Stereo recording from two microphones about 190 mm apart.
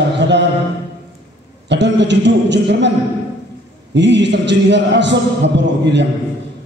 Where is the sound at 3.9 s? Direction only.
65° right (ahead or behind).